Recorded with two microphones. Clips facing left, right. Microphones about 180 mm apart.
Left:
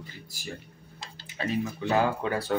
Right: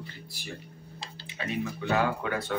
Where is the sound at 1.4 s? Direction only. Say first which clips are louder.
Left 3 dB; 35° left (ahead or behind).